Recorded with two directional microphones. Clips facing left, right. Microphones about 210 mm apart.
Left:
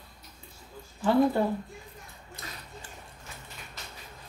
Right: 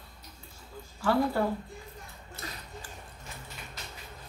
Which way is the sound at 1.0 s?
20° left (ahead or behind).